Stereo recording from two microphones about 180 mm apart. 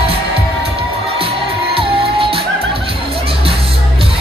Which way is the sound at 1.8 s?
30° right (ahead or behind).